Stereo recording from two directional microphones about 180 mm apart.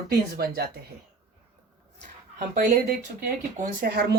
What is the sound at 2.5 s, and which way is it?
Speech, 50° right (ahead or behind).